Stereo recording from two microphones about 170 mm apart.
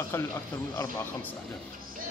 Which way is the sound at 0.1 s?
15° left (ahead or behind).